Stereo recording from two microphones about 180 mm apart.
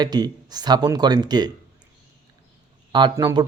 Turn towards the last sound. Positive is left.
turn(degrees=-25)  # may be behind; listen again after turning